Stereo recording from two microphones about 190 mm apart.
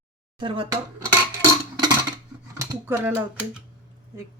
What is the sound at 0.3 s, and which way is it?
Speech, 25° right (ahead or behind).